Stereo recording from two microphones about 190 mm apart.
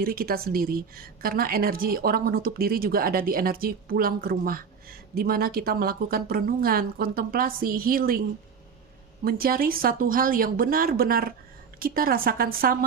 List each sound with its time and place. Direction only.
0.0 s a woman's voice: 50° right (ahead or behind)
9.2 s a woman's voice: 50° right (ahead or behind)